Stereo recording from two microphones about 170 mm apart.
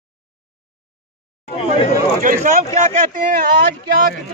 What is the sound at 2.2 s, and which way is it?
Speech, 45° right (ahead or behind).